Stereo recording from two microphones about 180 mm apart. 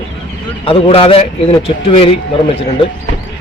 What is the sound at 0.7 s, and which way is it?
Speech, 30° left (ahead or behind).